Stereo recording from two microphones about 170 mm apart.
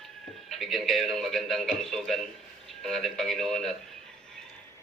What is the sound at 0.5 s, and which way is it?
A man's voice, centre (ahead or behind).